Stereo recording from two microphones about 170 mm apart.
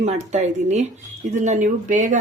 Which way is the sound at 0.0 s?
40° right (ahead or behind).